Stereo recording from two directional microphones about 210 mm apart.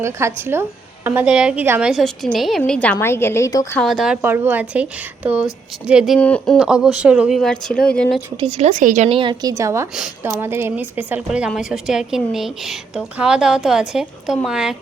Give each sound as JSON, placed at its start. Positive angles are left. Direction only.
{"t": 0.0, "sound": "a woman's voice", "side_deg": -10}
{"t": 3.7, "sound": "a woman's voice", "side_deg": 5}
{"t": 8.4, "sound": "a woman's voice", "side_deg": -30}
{"t": 9.9, "sound": "a woman's voice", "side_deg": -5}